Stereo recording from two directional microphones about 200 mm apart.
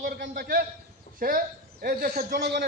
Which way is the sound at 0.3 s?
50° right (ahead or behind).